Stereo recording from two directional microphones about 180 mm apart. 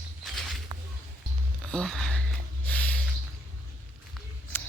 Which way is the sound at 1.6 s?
5° left (ahead or behind).